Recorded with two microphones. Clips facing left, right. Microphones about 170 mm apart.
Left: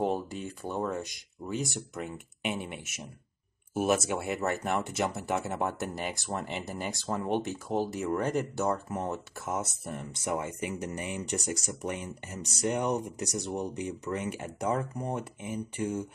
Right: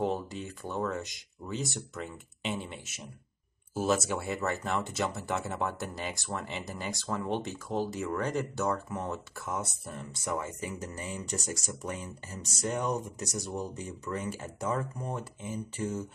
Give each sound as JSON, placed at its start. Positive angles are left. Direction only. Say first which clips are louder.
{"t": 0.7, "sound": "speech", "louder": "left 1 dB", "side_deg": 15}